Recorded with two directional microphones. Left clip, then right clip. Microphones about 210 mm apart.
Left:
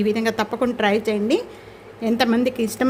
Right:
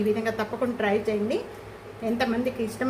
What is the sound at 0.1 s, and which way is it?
A woman's voice, 50° left (ahead or behind).